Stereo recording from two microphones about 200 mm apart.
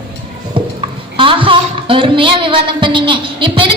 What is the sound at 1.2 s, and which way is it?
A woman's voice, 25° right (ahead or behind).